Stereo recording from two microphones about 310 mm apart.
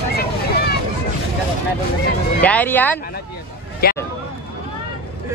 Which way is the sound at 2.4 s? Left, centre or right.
Centre.